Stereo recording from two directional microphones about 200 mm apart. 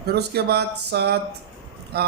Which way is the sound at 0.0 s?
55° right (ahead or behind).